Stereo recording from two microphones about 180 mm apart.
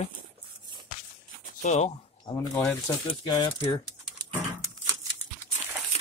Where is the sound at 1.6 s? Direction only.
40° left (ahead or behind).